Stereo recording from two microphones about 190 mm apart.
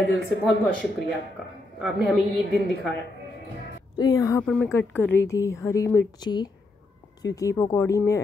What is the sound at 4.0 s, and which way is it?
A woman's voice, 20° left (ahead or behind).